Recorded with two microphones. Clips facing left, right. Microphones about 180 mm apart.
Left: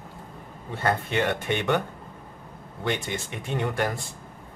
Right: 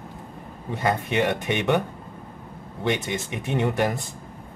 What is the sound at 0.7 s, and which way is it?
Speech, 15° right (ahead or behind).